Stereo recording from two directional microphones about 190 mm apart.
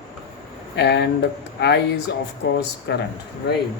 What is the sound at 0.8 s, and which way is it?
A man's voice, 60° left (ahead or behind).